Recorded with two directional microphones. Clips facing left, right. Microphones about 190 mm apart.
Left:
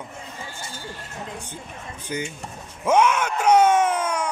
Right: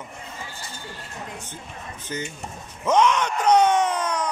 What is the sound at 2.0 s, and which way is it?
Speech, 10° left (ahead or behind).